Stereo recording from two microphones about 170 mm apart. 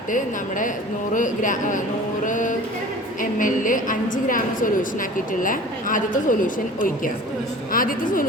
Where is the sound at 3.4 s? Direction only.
50° left (ahead or behind).